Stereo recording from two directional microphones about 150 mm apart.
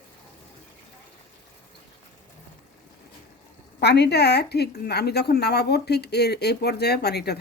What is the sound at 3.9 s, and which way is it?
A woman's voice, 90° left.